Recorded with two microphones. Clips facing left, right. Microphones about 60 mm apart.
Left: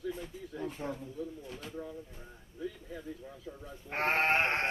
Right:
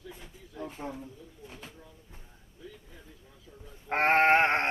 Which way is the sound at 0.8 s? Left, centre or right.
Right.